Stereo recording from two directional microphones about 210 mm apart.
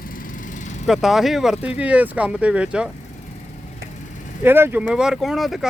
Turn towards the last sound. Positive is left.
turn(degrees=0)  # may be behind; listen again after turning